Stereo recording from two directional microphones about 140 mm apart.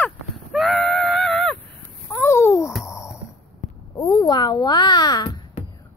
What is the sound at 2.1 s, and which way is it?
Babbling, 20° left (ahead or behind).